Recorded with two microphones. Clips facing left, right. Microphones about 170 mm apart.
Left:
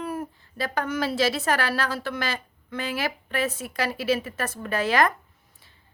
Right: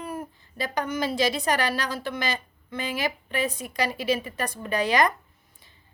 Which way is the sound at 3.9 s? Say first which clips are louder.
Left 3 dB; 5° left (ahead or behind).